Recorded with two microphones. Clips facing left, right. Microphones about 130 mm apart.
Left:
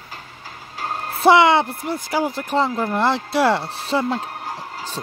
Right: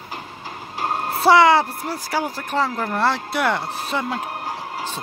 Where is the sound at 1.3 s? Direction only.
25° left (ahead or behind).